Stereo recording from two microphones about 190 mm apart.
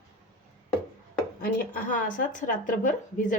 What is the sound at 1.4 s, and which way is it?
A woman's voice, 45° left (ahead or behind).